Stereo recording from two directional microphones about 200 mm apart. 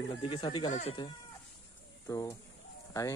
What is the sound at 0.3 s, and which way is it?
Speech, 25° left (ahead or behind).